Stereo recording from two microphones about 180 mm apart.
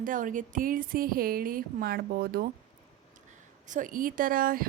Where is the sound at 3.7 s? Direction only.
45° right (ahead or behind).